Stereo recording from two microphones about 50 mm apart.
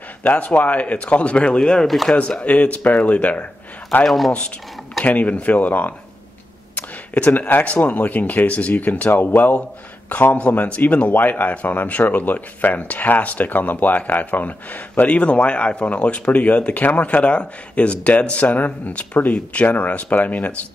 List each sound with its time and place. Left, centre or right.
0.2 s speech: left
5.0 s a man's voice: left
15.0 s speech: left